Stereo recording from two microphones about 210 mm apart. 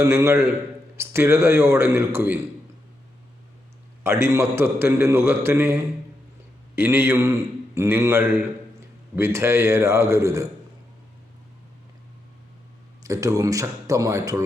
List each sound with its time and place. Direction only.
0.0 s a man's voice: 15° right (ahead or behind)
4.0 s a man's voice: 10° right (ahead or behind)
13.0 s a man's voice: 15° right (ahead or behind)